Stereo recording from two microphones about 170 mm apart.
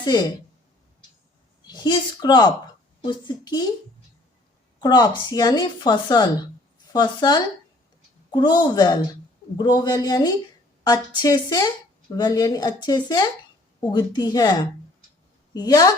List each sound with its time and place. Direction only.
0.0 s speech: 25° left (ahead or behind)
1.6 s a woman's voice: 25° left (ahead or behind)
4.8 s a woman's voice: 25° left (ahead or behind)